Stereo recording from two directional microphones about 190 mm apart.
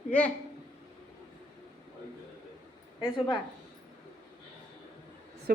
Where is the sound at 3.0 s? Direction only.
20° left (ahead or behind).